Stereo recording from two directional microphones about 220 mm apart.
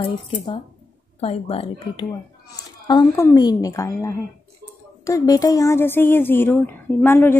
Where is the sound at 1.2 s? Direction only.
25° left (ahead or behind).